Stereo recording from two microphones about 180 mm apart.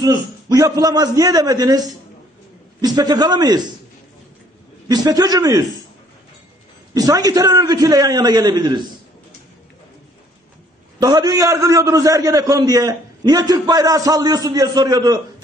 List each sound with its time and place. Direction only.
0.0 s a man's voice: 20° right (ahead or behind)
4.8 s a man's voice: 20° right (ahead or behind)
6.9 s a man's voice: 20° right (ahead or behind)
11.0 s a man's voice: 20° right (ahead or behind)